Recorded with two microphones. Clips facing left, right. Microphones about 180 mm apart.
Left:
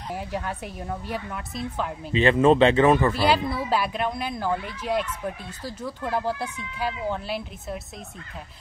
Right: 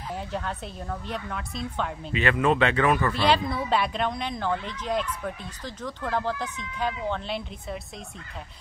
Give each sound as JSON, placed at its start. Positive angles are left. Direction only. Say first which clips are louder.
{"t": 0.1, "sound": "speech", "louder": "left 2 dB", "side_deg": 10}
{"t": 2.1, "sound": "speech", "louder": "left 6 dB", "side_deg": 30}
{"t": 3.1, "sound": "speech", "louder": "left 1 dB", "side_deg": 5}